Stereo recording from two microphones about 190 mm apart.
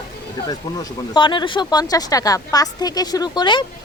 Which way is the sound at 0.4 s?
20° left (ahead or behind).